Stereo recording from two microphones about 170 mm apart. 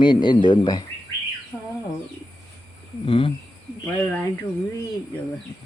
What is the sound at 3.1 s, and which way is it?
Speech, 30° left (ahead or behind).